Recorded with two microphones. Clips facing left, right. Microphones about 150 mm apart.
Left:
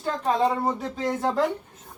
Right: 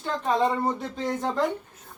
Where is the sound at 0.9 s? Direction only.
5° left (ahead or behind).